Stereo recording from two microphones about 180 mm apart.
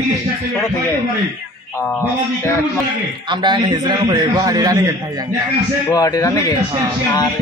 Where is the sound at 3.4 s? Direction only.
25° right (ahead or behind).